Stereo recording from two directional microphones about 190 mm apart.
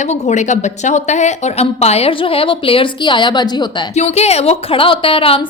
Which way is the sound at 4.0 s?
35° left (ahead or behind).